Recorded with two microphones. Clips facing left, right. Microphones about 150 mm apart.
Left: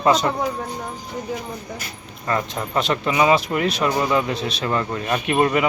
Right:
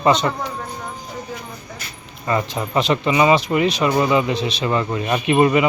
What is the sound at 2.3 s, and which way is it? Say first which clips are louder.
Speech: right 2 dB; 5° right (ahead or behind).